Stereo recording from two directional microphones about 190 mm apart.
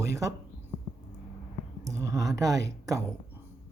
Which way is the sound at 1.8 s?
15° right (ahead or behind).